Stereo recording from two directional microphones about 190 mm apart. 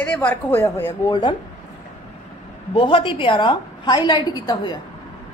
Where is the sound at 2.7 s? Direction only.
25° left (ahead or behind).